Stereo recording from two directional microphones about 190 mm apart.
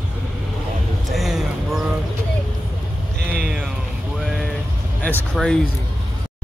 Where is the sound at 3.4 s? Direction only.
5° right (ahead or behind).